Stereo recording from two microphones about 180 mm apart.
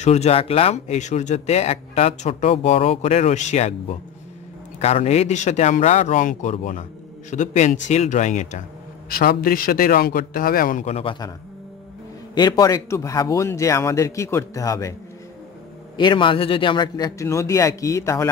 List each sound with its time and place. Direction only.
0.0 s speech: 35° left (ahead or behind)
4.7 s speech: 35° left (ahead or behind)
9.1 s speech: 55° left (ahead or behind); by 11.1 s 35° left (ahead or behind)
12.4 s a man's voice: 20° left (ahead or behind)
16.0 s a man's voice: 30° left (ahead or behind)